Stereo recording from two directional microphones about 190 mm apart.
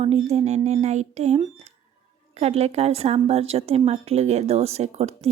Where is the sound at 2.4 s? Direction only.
35° right (ahead or behind).